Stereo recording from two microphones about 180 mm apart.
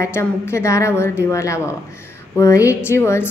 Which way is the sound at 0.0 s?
15° left (ahead or behind).